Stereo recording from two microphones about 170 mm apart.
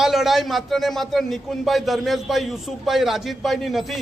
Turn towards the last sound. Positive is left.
turn(degrees=0)  # may be behind; listen again after turning